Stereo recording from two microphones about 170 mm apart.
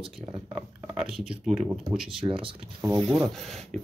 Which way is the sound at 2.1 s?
30° right (ahead or behind).